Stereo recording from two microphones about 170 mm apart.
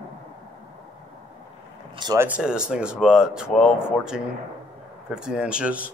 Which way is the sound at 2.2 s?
5° right (ahead or behind).